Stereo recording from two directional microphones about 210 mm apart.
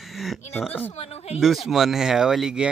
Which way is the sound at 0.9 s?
30° left (ahead or behind).